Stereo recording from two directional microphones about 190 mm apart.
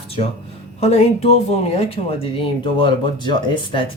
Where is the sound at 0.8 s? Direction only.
35° left (ahead or behind).